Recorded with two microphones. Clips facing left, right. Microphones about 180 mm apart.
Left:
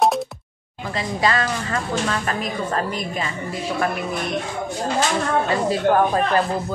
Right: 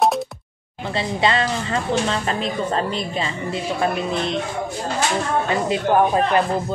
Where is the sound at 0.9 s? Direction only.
25° right (ahead or behind).